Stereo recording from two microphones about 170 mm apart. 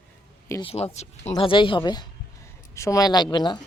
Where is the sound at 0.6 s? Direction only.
35° left (ahead or behind).